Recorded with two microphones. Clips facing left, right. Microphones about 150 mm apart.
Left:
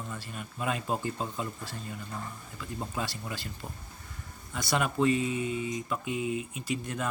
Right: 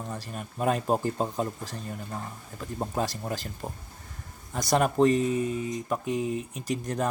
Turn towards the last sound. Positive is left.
turn(degrees=-40)  # may be behind; listen again after turning